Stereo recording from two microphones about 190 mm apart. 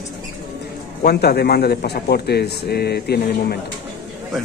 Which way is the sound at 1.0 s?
55° left (ahead or behind).